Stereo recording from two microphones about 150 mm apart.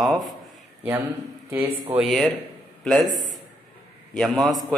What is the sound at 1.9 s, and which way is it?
A man's voice, centre (ahead or behind).